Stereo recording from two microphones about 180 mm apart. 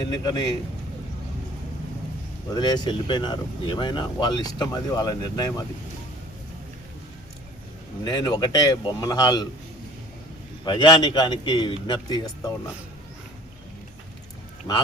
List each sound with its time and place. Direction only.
0.0 s speech: 20° left (ahead or behind)
2.5 s speech: 25° left (ahead or behind)
8.0 s speech: 25° left (ahead or behind)
10.7 s speech: 25° left (ahead or behind)